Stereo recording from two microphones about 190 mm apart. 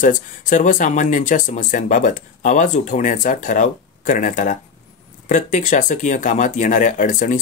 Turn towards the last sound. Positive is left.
turn(degrees=45)  # may be behind; listen again after turning